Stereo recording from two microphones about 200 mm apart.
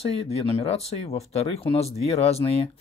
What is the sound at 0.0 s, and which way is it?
Speech, 30° left (ahead or behind).